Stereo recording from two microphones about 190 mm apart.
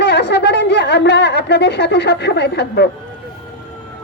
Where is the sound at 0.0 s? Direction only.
60° left (ahead or behind).